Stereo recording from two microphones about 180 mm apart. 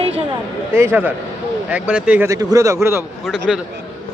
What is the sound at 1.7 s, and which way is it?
A man's voice, 5° right (ahead or behind).